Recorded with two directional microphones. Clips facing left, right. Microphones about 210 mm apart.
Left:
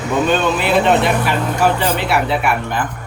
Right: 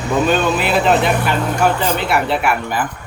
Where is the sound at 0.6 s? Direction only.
Centre (ahead or behind).